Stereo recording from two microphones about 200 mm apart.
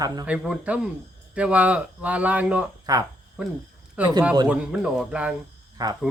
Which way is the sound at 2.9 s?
20° right (ahead or behind).